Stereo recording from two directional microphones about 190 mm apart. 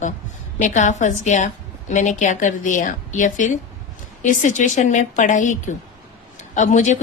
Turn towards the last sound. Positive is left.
turn(degrees=40)  # may be behind; listen again after turning